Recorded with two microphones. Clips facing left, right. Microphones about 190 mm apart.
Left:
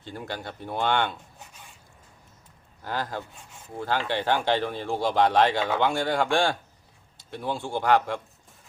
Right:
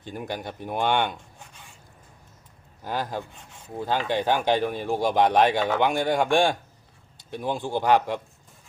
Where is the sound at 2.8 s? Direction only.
15° right (ahead or behind).